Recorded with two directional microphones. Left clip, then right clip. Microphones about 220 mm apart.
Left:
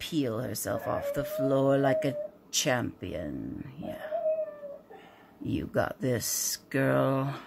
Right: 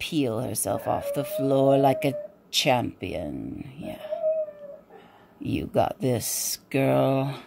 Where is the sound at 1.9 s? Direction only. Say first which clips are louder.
Right 4 dB; 20° left (ahead or behind).